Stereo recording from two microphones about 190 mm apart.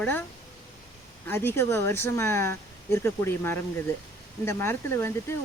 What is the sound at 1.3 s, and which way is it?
Speech, 10° left (ahead or behind).